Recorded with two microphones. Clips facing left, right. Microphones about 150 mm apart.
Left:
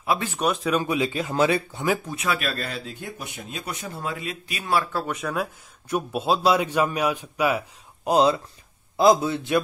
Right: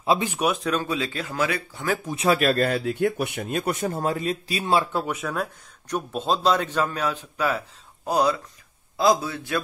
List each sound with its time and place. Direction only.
0.0 s speech: 25° right (ahead or behind)
0.3 s speech: 5° right (ahead or behind)
0.7 s speech: 15° left (ahead or behind)
2.1 s speech: 35° right (ahead or behind)
2.5 s speech: 55° right (ahead or behind); by 5.0 s 25° right (ahead or behind)
5.0 s a man's voice: centre (ahead or behind); by 9.6 s 20° left (ahead or behind)